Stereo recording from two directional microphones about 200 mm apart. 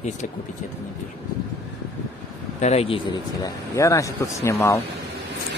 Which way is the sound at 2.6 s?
30° left (ahead or behind).